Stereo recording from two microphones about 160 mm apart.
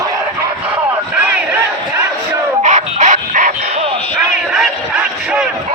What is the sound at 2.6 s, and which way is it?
Bow-wow, 45° right (ahead or behind).